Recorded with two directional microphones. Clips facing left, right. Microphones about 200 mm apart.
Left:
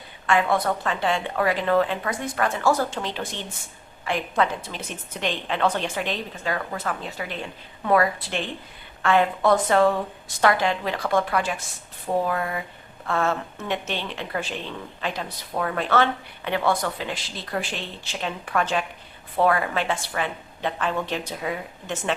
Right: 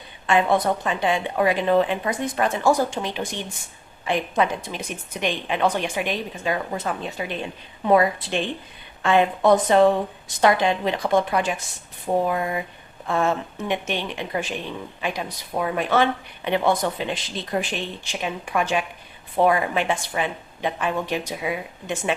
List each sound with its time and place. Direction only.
0.3 s a woman's voice: 20° right (ahead or behind)